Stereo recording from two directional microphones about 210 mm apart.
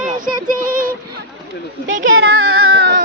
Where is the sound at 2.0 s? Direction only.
70° right (ahead or behind); by 2.7 s 90° right.